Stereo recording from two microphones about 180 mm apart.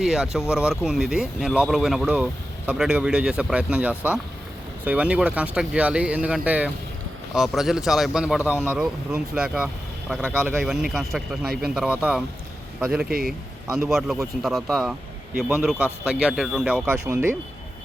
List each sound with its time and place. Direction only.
0.0 s speech: 5° right (ahead or behind)
13.1 s speech: 55° right (ahead or behind)
13.7 s speech: 5° right (ahead or behind)